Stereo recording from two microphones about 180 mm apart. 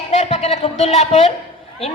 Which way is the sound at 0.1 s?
35° left (ahead or behind).